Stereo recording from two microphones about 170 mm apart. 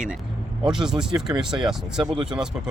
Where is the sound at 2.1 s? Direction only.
30° right (ahead or behind).